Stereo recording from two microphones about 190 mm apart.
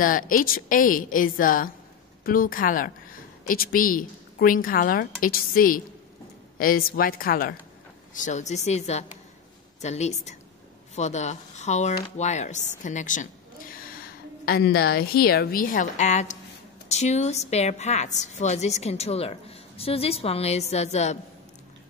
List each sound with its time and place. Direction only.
0.0 s a woman's voice: 45° left (ahead or behind)